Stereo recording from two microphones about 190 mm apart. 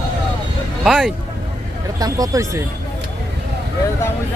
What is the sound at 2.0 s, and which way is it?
Speech, 20° right (ahead or behind).